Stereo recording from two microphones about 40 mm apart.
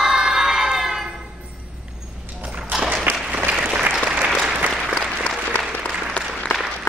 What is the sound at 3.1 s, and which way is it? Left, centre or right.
Applause, right.